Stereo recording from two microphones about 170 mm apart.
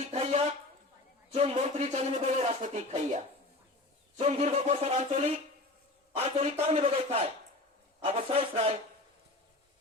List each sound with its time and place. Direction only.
0.1 s a sound: 40° right (ahead or behind)
1.3 s speech: 35° right (ahead or behind)
4.2 s speech: 40° right (ahead or behind)